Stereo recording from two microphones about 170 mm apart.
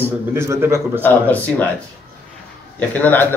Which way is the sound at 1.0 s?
10° left (ahead or behind).